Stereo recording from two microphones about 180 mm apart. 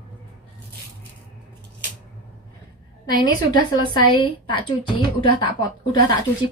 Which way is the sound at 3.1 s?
20° left (ahead or behind).